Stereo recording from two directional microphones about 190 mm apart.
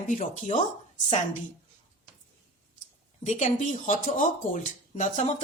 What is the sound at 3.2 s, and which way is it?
A woman's voice, 40° left (ahead or behind).